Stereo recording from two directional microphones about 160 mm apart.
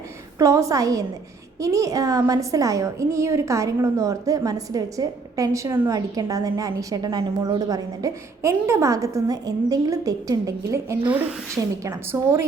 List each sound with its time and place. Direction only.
0.3 s a woman's voice: 20° right (ahead or behind)